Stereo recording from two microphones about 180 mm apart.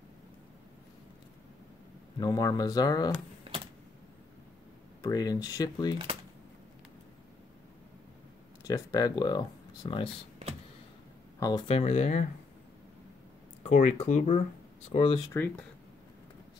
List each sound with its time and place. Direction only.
2.1 s speech: 20° left (ahead or behind)
5.0 s speech: 20° left (ahead or behind)
8.6 s speech: 20° left (ahead or behind)
11.3 s speech: 20° left (ahead or behind)
11.6 s speech: 35° left (ahead or behind)
13.7 s speech: 40° left (ahead or behind)
14.9 s speech: 30° left (ahead or behind)